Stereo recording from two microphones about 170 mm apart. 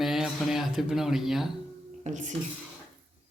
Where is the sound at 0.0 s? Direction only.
Centre (ahead or behind).